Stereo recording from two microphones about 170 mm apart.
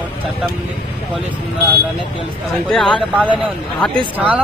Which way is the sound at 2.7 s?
5° left (ahead or behind).